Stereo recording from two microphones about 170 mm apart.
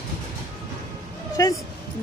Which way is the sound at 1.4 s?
20° left (ahead or behind).